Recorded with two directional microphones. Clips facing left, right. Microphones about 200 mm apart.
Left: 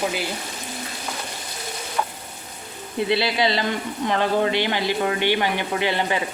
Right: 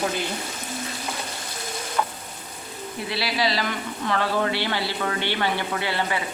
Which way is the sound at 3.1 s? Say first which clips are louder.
Left 4 dB; 25° left (ahead or behind).